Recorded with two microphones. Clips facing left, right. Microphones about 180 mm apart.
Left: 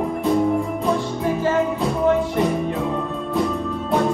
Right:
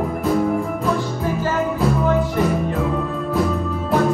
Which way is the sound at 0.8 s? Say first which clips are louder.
Even; 25° left (ahead or behind).